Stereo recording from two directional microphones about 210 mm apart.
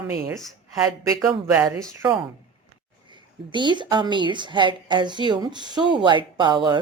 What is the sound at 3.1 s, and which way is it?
A woman's voice, 20° right (ahead or behind).